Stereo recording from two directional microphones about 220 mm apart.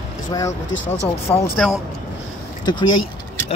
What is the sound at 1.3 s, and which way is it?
Speech, 10° left (ahead or behind).